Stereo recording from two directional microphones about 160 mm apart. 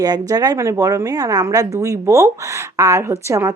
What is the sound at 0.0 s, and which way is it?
A woman's voice, 25° right (ahead or behind).